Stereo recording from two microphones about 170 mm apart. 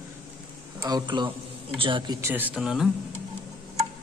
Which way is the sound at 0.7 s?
25° right (ahead or behind).